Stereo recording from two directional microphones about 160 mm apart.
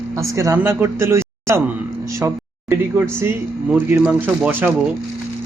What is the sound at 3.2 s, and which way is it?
Speech, 15° right (ahead or behind).